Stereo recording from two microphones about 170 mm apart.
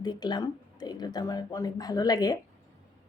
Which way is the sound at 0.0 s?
25° left (ahead or behind).